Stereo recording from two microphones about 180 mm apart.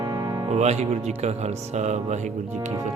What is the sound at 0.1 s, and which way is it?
Music, 15° right (ahead or behind).